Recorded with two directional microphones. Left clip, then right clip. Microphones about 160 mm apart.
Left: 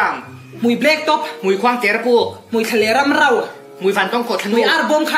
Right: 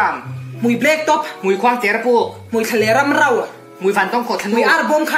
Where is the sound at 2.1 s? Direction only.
30° left (ahead or behind).